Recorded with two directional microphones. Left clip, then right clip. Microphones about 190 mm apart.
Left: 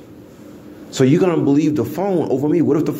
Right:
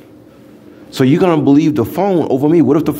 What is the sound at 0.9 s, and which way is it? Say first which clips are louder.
Speech: right 3 dB; 30° right (ahead or behind).